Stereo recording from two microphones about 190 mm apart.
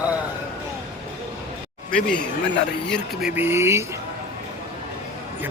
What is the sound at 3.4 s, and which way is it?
Speech, 10° right (ahead or behind).